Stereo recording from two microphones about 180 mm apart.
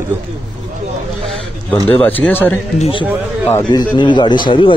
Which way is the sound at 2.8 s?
30° left (ahead or behind).